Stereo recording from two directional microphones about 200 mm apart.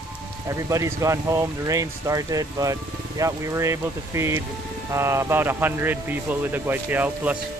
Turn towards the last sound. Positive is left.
turn(degrees=-10)  # may be behind; listen again after turning